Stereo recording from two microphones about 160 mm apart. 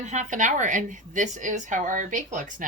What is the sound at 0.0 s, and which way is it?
A woman's voice, 50° right (ahead or behind).